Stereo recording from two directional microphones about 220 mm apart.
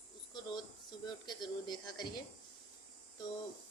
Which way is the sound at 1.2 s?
20° left (ahead or behind).